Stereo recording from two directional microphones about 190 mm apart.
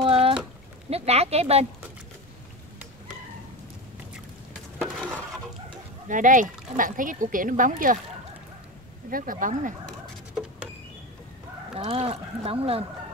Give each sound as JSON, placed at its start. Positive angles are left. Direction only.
{"t": 0.0, "sound": "a sound", "side_deg": -30}
{"t": 0.8, "sound": "speech", "side_deg": -35}
{"t": 4.7, "sound": "a sound", "side_deg": 5}
{"t": 6.0, "sound": "speech", "side_deg": -45}
{"t": 9.1, "sound": "speech", "side_deg": -45}
{"t": 11.7, "sound": "speech", "side_deg": -30}